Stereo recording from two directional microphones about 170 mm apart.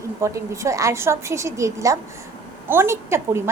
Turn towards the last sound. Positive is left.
turn(degrees=-15)  # may be behind; listen again after turning